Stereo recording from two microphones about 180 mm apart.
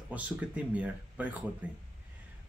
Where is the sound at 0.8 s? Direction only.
10° right (ahead or behind).